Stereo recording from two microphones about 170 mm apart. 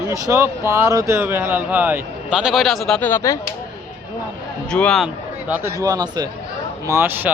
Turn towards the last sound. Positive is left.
turn(degrees=-10)  # may be behind; listen again after turning